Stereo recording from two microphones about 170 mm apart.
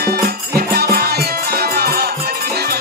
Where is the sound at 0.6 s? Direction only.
65° right (ahead or behind).